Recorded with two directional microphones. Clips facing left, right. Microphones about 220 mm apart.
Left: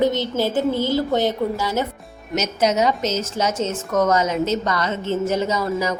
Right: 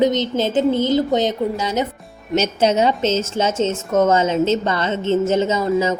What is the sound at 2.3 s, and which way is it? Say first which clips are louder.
A woman's voice: right 3 dB; 30° right (ahead or behind).